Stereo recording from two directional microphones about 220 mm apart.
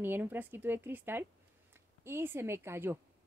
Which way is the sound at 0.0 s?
10° right (ahead or behind).